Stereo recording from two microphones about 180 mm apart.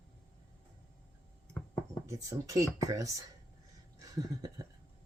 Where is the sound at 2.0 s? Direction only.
20° right (ahead or behind).